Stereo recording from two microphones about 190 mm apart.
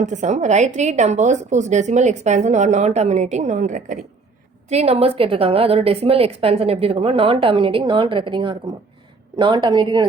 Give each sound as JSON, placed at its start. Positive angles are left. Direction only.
{"t": 0.0, "sound": "a woman's voice", "side_deg": -40}